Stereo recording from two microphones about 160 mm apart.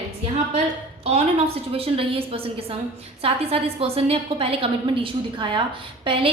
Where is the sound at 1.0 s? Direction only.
40° right (ahead or behind).